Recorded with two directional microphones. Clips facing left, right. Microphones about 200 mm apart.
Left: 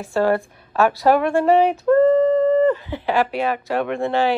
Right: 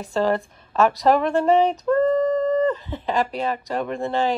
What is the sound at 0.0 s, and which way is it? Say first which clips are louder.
Speech: left 3 dB; centre (ahead or behind).